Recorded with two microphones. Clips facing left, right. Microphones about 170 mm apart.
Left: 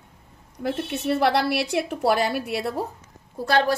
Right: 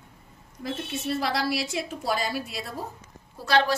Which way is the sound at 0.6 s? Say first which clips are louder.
Left 5 dB; 65° left (ahead or behind).